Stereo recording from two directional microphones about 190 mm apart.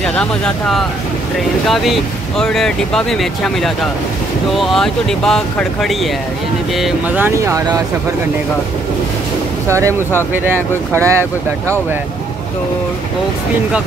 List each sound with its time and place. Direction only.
0.0 s speech: 5° left (ahead or behind)
6.8 s speech: 10° right (ahead or behind)
9.7 s speech: 15° right (ahead or behind)